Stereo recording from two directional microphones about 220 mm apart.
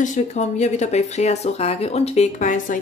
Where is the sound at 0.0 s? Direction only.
30° left (ahead or behind).